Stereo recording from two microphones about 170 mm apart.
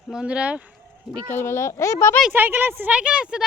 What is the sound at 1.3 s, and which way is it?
Speech, 15° left (ahead or behind).